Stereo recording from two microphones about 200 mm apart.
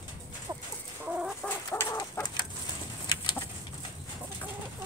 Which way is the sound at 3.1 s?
20° left (ahead or behind).